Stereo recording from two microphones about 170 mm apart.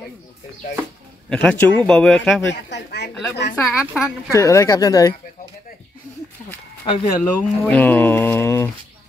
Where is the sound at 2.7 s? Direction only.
85° left.